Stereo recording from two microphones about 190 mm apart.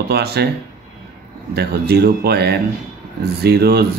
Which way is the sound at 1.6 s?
60° right (ahead or behind).